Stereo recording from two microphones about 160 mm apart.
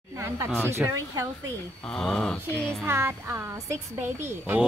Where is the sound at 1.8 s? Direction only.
5° left (ahead or behind).